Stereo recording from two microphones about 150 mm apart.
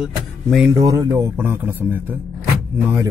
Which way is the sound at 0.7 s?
20° right (ahead or behind).